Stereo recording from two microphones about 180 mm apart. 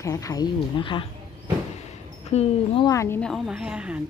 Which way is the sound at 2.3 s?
30° left (ahead or behind).